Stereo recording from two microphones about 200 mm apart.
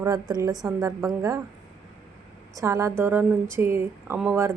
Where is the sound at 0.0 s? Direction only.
20° right (ahead or behind).